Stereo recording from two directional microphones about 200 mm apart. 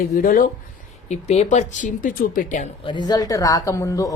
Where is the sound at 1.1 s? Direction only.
35° left (ahead or behind).